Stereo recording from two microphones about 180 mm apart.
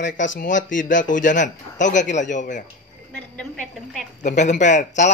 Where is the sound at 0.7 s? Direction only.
45° left (ahead or behind).